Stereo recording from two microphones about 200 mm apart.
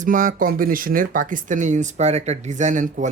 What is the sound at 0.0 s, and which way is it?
Speech, 40° right (ahead or behind).